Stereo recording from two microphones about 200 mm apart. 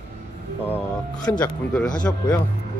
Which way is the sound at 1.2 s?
20° left (ahead or behind).